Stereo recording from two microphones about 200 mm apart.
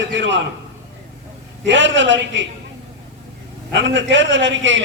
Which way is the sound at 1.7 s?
65° right (ahead or behind).